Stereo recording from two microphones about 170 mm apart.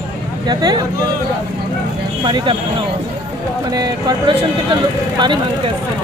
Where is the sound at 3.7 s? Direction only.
25° right (ahead or behind).